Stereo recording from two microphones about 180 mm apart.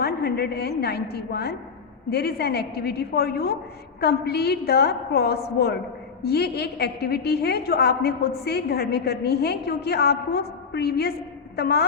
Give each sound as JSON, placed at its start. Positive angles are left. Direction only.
{"t": 0.0, "sound": "a woman's voice", "side_deg": 60}